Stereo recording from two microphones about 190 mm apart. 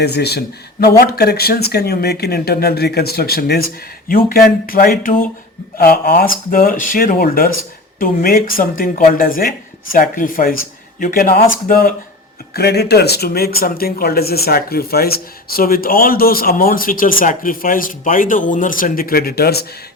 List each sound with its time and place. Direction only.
0.0 s speech: 60° left (ahead or behind)